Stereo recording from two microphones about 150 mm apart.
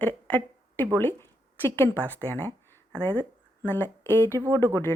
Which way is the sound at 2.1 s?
10° left (ahead or behind).